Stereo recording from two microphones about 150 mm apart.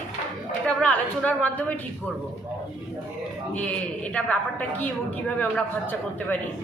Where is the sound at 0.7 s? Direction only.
10° left (ahead or behind).